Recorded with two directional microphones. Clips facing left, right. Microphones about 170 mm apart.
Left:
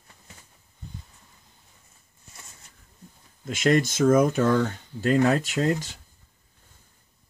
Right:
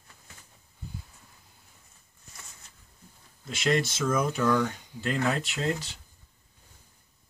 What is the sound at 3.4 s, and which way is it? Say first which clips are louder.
Speech: left 5 dB; 50° left (ahead or behind).